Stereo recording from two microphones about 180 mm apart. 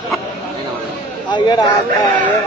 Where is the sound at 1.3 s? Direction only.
25° left (ahead or behind).